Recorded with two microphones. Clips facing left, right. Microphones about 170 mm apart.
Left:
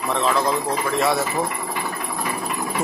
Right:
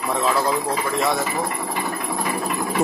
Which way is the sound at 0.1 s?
10° right (ahead or behind).